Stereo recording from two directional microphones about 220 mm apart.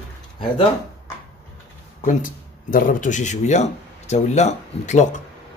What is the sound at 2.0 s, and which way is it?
Speech, 35° left (ahead or behind).